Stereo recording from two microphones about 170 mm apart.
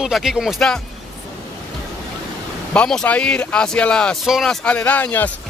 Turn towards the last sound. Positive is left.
turn(degrees=10)  # may be behind; listen again after turning